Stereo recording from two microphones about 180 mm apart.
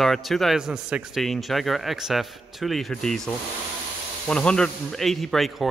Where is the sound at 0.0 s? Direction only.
Centre (ahead or behind).